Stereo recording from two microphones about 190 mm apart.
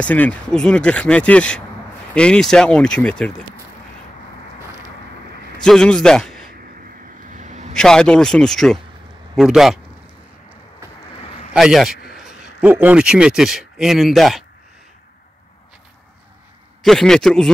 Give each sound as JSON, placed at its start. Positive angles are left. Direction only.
{"t": 0.0, "sound": "speech", "side_deg": 5}
{"t": 5.6, "sound": "a man's voice", "side_deg": 5}
{"t": 7.3, "sound": "vehicle", "side_deg": -40}
{"t": 7.7, "sound": "a man's voice", "side_deg": 5}
{"t": 11.5, "sound": "speech", "side_deg": 0}
{"t": 16.8, "sound": "speech", "side_deg": 0}